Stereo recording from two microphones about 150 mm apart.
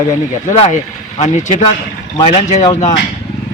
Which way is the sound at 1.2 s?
50° left (ahead or behind).